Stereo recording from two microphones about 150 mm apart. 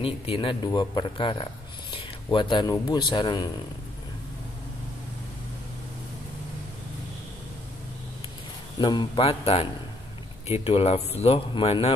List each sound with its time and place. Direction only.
0.0 s speech: 35° left (ahead or behind)
8.7 s speech: 30° left (ahead or behind)